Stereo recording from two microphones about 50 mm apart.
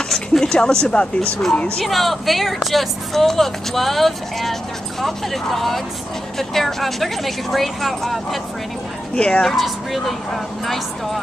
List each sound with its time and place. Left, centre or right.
0.1 s speech: centre
1.8 s speech: centre
9.1 s speech: left
9.6 s speech: centre